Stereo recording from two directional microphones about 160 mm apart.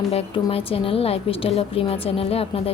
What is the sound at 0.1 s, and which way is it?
A woman's voice, 35° left (ahead or behind).